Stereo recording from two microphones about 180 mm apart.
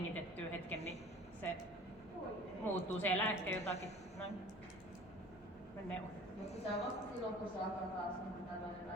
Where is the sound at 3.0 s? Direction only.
10° left (ahead or behind).